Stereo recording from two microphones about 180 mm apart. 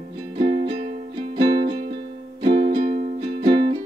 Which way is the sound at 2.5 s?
55° right (ahead or behind).